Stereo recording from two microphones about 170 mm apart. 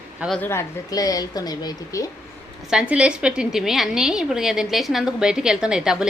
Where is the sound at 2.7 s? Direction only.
5° right (ahead or behind).